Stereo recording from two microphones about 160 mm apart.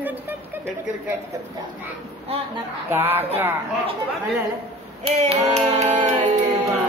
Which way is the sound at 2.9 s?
15° right (ahead or behind).